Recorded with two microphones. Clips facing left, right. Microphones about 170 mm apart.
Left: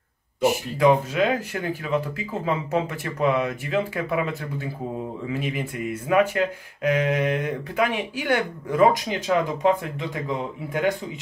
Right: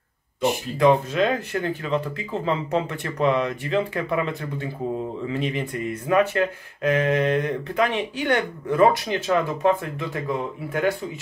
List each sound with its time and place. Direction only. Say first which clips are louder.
0.4 s speech: even; 10° left (ahead or behind)